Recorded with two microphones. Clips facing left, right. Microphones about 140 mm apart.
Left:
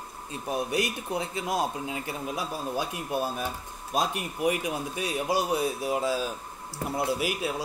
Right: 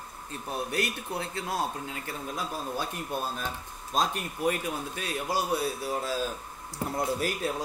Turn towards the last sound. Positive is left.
turn(degrees=10)  # may be behind; listen again after turning